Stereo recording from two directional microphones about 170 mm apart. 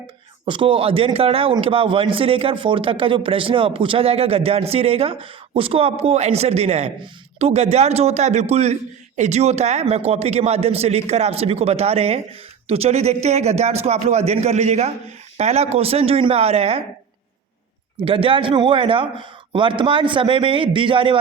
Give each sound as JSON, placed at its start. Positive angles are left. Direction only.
{"t": 0.4, "sound": "a man's voice", "side_deg": -30}
{"t": 18.0, "sound": "a man's voice", "side_deg": -30}